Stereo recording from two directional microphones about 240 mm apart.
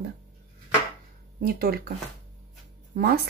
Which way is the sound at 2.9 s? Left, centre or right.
Right.